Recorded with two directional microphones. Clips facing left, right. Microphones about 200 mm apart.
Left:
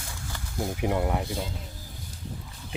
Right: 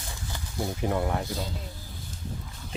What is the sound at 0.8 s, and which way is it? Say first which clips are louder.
Speech: left 1 dB; 15° left (ahead or behind).